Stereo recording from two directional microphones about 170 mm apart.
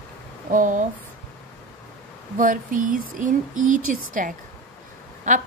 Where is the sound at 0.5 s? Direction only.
50° right (ahead or behind).